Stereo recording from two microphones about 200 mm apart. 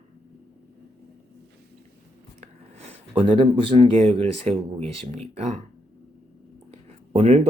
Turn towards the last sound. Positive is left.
turn(degrees=-35)  # may be behind; listen again after turning